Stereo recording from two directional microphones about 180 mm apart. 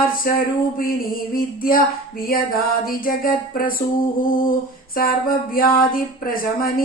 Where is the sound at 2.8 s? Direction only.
50° left (ahead or behind).